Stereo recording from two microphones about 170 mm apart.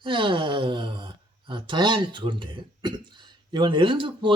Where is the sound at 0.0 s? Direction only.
30° right (ahead or behind).